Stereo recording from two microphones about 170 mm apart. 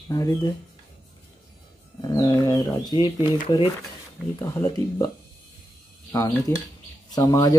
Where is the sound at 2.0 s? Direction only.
25° left (ahead or behind).